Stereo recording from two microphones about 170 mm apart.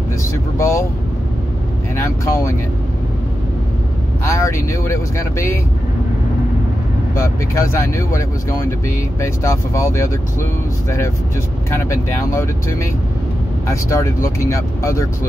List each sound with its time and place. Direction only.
0.6 s speech: 15° left (ahead or behind)
2.0 s speech: 15° left (ahead or behind)
4.2 s speech: 15° left (ahead or behind)
7.2 s speech: 15° left (ahead or behind)
11.7 s speech: 15° left (ahead or behind)
13.7 s speech: 15° left (ahead or behind)